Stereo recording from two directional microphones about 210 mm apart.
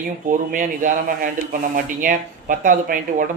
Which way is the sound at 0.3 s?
40° right (ahead or behind).